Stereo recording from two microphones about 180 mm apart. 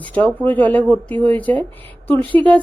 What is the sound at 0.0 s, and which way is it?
Speech, 5° left (ahead or behind).